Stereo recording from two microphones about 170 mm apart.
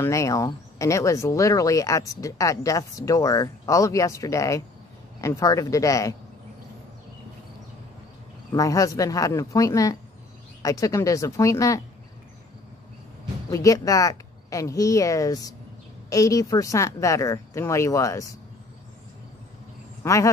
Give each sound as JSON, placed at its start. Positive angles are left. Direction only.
{"t": 0.0, "sound": "speech", "side_deg": 20}
{"t": 8.5, "sound": "speech", "side_deg": 20}
{"t": 13.5, "sound": "speech", "side_deg": 20}
{"t": 20.0, "sound": "speech", "side_deg": 20}